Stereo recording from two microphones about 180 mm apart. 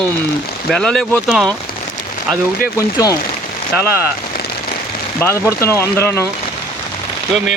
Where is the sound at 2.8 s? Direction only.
20° left (ahead or behind).